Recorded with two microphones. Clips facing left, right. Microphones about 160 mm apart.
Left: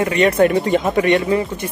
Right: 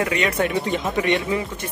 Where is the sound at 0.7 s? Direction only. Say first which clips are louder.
Left 7 dB; 55° left (ahead or behind).